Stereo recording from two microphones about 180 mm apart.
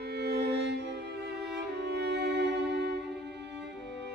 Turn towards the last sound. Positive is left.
turn(degrees=-70)  # may be behind; listen again after turning